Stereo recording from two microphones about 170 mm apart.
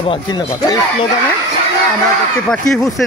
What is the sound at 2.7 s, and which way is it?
Speech, 5° left (ahead or behind).